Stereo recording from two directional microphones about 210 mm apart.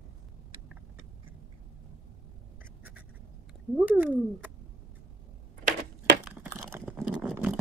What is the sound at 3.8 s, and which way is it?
Speech, 5° right (ahead or behind).